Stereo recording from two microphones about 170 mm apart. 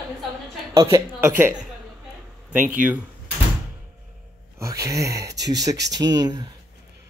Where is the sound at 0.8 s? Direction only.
15° right (ahead or behind).